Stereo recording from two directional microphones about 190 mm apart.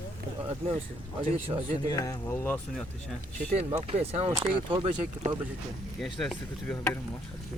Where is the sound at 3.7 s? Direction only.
35° right (ahead or behind).